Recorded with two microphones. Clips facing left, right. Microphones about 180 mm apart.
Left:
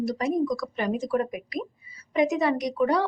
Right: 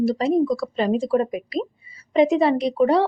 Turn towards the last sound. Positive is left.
turn(degrees=-25)  # may be behind; listen again after turning